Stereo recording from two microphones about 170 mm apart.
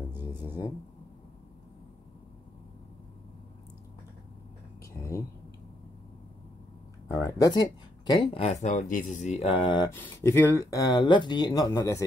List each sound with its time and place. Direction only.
0.1 s music: 10° right (ahead or behind)
4.9 s a sound: 20° left (ahead or behind)
7.1 s speech: 15° left (ahead or behind)
8.1 s speech: 35° left (ahead or behind)
9.5 s speech: 30° left (ahead or behind)
9.8 s speech: 15° left (ahead or behind)